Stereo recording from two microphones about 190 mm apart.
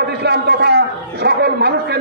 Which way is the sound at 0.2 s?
60° right (ahead or behind).